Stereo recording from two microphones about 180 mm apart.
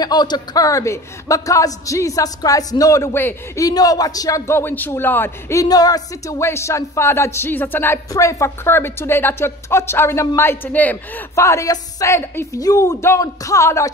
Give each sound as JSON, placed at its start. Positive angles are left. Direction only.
{"t": 0.0, "sound": "a man's voice", "side_deg": 25}